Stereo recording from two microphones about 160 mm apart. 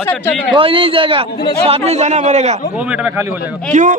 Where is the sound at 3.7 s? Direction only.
50° right (ahead or behind).